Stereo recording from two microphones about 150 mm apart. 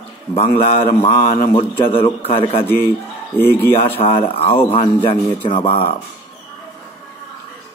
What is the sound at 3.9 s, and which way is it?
A man's voice, 40° left (ahead or behind).